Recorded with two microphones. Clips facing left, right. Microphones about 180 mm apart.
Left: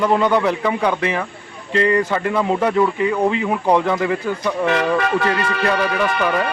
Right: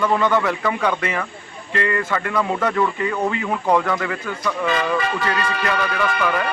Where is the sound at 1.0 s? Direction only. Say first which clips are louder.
Left 3 dB; 25° left (ahead or behind).